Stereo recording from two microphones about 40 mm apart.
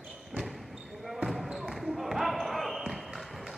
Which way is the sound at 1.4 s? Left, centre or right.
Centre.